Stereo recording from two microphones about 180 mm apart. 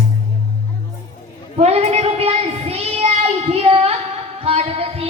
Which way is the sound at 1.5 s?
35° right (ahead or behind).